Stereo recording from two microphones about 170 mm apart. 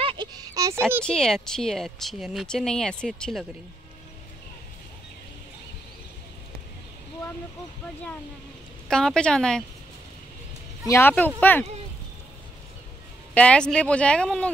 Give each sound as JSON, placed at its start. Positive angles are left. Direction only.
{"t": 0.0, "sound": "a sound", "side_deg": -30}
{"t": 0.6, "sound": "speech", "side_deg": -15}
{"t": 1.0, "sound": "speech", "side_deg": 5}
{"t": 8.8, "sound": "speech", "side_deg": 5}
{"t": 10.9, "sound": "speech", "side_deg": 15}
{"t": 13.3, "sound": "speech", "side_deg": 5}